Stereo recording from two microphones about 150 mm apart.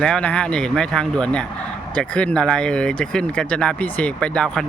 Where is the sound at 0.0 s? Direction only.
5° left (ahead or behind).